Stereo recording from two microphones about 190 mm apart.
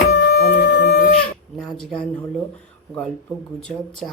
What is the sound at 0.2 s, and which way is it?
Wind instrument, 65° left (ahead or behind).